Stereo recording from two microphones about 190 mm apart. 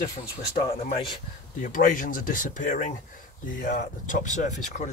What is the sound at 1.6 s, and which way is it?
Speech, 45° left (ahead or behind).